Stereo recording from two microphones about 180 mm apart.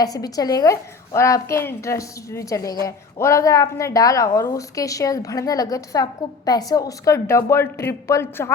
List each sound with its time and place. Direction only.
0.0 s a woman's voice: 20° left (ahead or behind)